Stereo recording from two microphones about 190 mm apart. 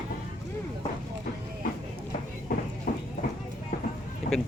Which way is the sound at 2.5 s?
45° left (ahead or behind).